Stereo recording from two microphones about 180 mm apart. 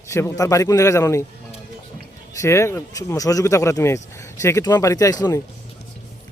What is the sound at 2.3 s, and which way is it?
Speech, 15° left (ahead or behind).